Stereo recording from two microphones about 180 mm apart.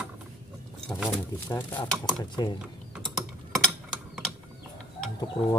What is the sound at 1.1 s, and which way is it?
Speech, 10° left (ahead or behind).